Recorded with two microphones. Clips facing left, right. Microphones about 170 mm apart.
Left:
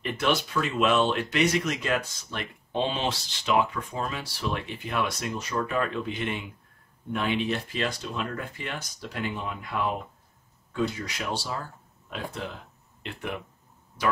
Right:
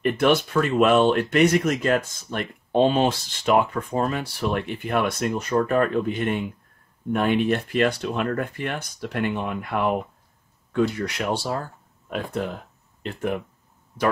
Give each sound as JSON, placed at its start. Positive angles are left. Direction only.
{"t": 0.0, "sound": "speech", "side_deg": -55}
{"t": 13.0, "sound": "speech", "side_deg": -45}